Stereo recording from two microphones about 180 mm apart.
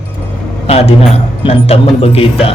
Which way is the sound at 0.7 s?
35° left (ahead or behind).